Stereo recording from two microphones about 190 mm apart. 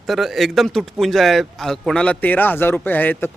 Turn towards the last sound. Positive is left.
turn(degrees=10)  # may be behind; listen again after turning